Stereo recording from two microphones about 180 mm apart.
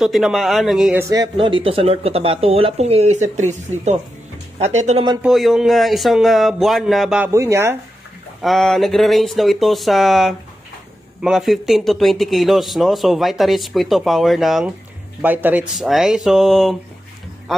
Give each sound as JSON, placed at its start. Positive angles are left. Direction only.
{"t": 0.0, "sound": "speech", "side_deg": 0}
{"t": 0.9, "sound": "speech", "side_deg": -20}
{"t": 5.2, "sound": "speech", "side_deg": 0}
{"t": 7.2, "sound": "speech", "side_deg": -15}
{"t": 8.4, "sound": "speech", "side_deg": 0}